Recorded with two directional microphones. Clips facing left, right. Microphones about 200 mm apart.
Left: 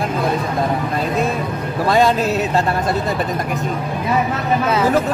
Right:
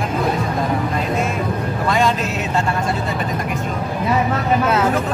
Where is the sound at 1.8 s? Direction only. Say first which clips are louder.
Left 5 dB; 35° left (ahead or behind).